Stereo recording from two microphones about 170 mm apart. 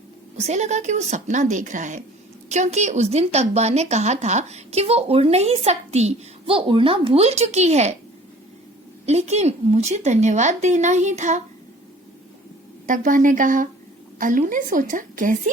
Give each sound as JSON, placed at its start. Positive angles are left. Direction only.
{"t": 0.3, "sound": "a woman's voice", "side_deg": -40}
{"t": 9.0, "sound": "a woman's voice", "side_deg": -40}
{"t": 12.9, "sound": "a woman's voice", "side_deg": -50}